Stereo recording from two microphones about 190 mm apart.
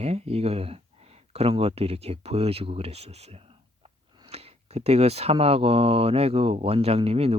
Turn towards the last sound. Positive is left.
turn(degrees=-30)  # may be behind; listen again after turning